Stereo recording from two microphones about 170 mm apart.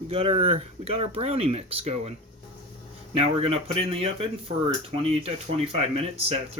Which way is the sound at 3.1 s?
35° right (ahead or behind).